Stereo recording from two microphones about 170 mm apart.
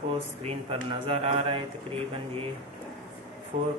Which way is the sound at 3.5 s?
45° right (ahead or behind).